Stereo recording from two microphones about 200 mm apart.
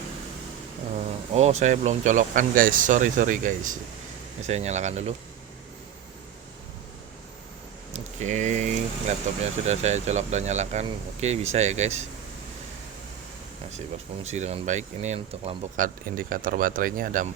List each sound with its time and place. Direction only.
1.3 s speech: 30° right (ahead or behind)
7.9 s speech: 35° right (ahead or behind)
14.3 s speech: 35° right (ahead or behind)
15.8 s speech: 45° right (ahead or behind)